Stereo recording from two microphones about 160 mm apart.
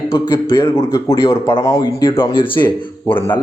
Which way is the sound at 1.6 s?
20° left (ahead or behind).